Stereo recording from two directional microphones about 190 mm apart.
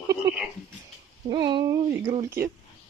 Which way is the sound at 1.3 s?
25° right (ahead or behind).